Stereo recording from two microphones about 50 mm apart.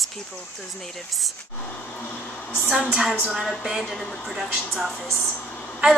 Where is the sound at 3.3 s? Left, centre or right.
Centre.